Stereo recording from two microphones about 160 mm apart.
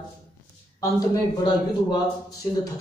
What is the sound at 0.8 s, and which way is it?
A man's voice, 25° left (ahead or behind).